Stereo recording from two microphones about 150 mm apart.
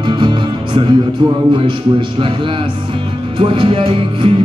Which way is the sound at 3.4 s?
35° right (ahead or behind).